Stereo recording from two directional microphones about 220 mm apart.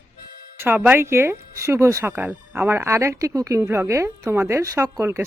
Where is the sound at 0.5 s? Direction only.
10° right (ahead or behind).